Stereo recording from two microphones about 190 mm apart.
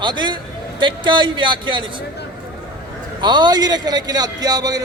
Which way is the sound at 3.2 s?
25° right (ahead or behind).